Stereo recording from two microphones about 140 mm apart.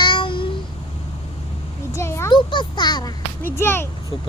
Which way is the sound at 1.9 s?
20° left (ahead or behind).